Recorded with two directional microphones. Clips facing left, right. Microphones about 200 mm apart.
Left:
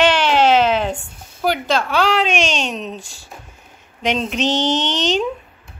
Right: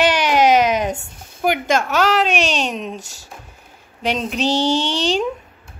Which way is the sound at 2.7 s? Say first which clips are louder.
Even; 10° right (ahead or behind).